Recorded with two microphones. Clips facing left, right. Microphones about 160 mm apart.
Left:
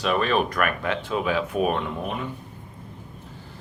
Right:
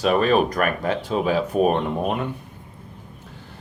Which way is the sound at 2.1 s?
60° right (ahead or behind).